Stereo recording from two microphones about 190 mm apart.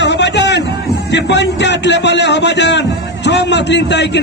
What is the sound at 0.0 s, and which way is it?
Music, 65° left (ahead or behind).